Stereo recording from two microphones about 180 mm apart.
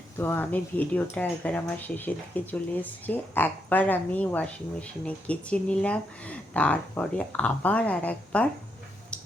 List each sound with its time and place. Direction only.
0.2 s speech: 10° left (ahead or behind)